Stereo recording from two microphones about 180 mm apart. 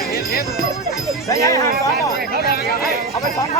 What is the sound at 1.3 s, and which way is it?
Speech, 20° left (ahead or behind).